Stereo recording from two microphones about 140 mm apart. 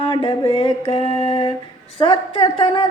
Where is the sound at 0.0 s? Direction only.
40° left (ahead or behind).